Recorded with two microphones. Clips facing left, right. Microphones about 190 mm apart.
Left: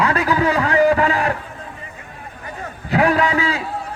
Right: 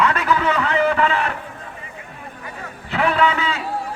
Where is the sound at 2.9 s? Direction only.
40° left (ahead or behind).